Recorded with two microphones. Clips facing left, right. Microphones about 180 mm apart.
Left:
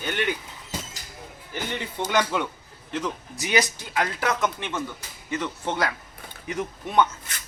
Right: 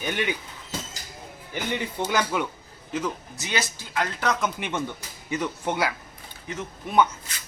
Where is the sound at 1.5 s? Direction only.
15° right (ahead or behind).